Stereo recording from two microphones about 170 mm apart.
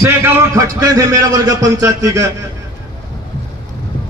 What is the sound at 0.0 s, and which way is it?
A man's voice, 15° right (ahead or behind).